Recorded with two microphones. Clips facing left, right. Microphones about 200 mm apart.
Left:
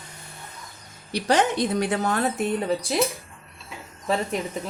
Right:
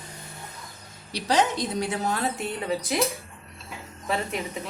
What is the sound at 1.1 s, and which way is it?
A woman's voice, 55° left (ahead or behind).